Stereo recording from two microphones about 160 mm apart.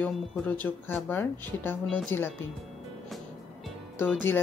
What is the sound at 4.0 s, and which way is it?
Music, 10° left (ahead or behind).